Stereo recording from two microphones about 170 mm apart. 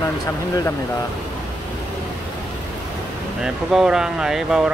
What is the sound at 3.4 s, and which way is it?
Speech, 5° right (ahead or behind).